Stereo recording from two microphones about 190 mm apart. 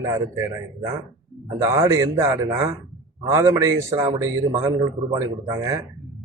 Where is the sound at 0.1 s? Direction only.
15° right (ahead or behind).